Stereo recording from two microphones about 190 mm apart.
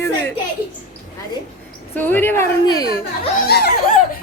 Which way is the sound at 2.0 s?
10° left (ahead or behind).